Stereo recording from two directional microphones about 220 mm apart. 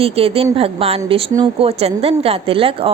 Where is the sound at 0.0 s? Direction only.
25° right (ahead or behind).